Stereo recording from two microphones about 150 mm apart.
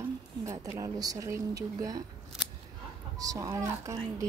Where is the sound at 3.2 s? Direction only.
25° right (ahead or behind).